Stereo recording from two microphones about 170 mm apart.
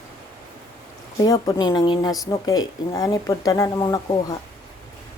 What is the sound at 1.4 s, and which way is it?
Speech, 25° left (ahead or behind).